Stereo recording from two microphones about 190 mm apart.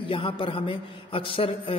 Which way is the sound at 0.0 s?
25° left (ahead or behind).